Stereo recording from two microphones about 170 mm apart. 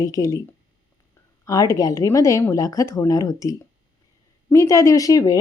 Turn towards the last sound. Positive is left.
turn(degrees=20)  # may be behind; listen again after turning